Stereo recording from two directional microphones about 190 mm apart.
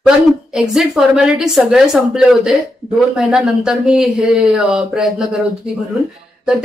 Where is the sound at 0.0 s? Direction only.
5° right (ahead or behind).